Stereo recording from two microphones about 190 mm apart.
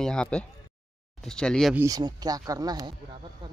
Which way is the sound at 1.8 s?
20° right (ahead or behind).